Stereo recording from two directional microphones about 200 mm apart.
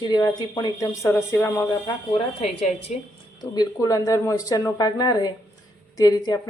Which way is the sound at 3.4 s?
20° left (ahead or behind).